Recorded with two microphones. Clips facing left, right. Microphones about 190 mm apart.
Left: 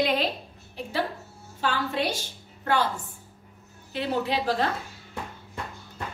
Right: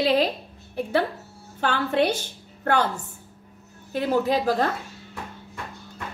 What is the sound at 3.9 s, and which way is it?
Speech, 45° right (ahead or behind).